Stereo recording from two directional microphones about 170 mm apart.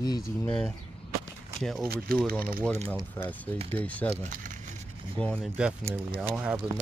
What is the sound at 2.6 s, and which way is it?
Speech, 10° left (ahead or behind).